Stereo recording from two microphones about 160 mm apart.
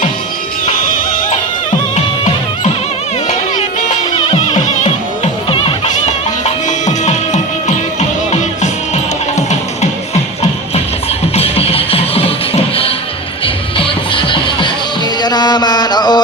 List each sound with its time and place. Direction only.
4.3 s music: 30° left (ahead or behind)
4.7 s music: 40° left (ahead or behind)
6.7 s music: 50° left (ahead or behind)
9.3 s music: 45° left (ahead or behind)
11.3 s music: 40° left (ahead or behind)
13.4 s music: 35° left (ahead or behind)